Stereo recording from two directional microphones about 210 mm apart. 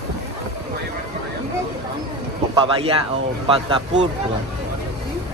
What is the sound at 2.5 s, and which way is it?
Speech, 25° right (ahead or behind).